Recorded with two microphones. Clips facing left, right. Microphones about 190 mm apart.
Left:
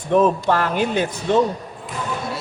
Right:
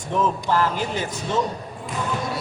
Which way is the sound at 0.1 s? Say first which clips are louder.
Left 6 dB; 60° left (ahead or behind).